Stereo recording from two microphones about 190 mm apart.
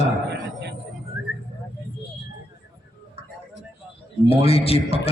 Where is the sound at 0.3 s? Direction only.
60° right (ahead or behind).